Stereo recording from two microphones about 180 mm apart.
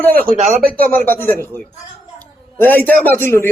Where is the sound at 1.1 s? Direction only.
10° left (ahead or behind).